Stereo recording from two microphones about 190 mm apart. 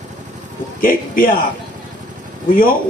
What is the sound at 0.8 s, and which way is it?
Speech, 45° left (ahead or behind).